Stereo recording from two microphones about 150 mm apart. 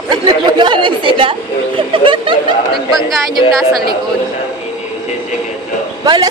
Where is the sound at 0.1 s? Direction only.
30° right (ahead or behind).